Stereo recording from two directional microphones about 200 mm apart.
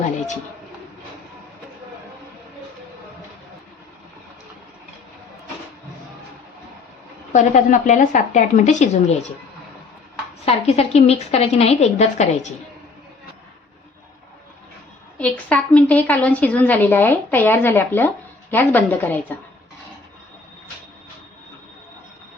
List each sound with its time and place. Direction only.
7.3 s a woman's voice: 40° left (ahead or behind)
10.4 s a woman's voice: 30° left (ahead or behind)
15.2 s a woman's voice: 5° left (ahead or behind)